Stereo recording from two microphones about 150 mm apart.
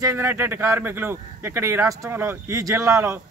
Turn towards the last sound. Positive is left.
turn(degrees=-20)  # may be behind; listen again after turning